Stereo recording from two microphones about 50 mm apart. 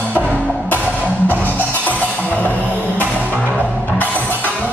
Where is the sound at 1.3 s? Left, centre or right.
Left.